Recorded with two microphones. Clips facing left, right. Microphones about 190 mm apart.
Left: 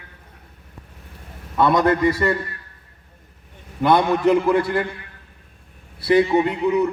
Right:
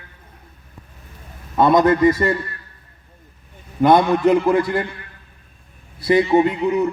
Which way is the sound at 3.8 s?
45° right (ahead or behind).